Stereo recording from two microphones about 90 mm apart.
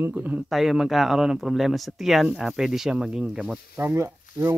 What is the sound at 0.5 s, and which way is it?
Speech, 5° right (ahead or behind).